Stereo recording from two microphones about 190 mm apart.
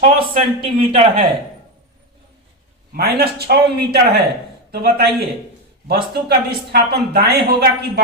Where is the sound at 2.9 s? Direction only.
55° right (ahead or behind).